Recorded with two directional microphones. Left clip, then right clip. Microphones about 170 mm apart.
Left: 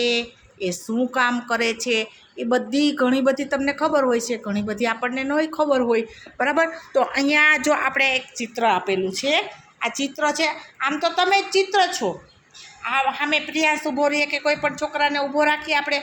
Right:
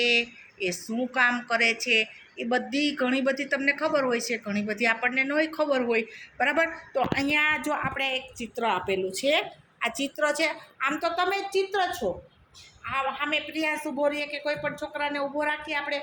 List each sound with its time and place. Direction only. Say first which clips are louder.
0.0 s speech: left 2 dB; 25° left (ahead or behind)